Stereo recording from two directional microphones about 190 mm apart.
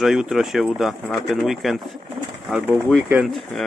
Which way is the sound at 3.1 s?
Centre (ahead or behind).